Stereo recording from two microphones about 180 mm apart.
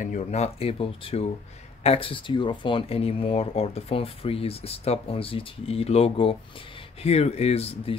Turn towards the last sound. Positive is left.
turn(degrees=35)  # may be behind; listen again after turning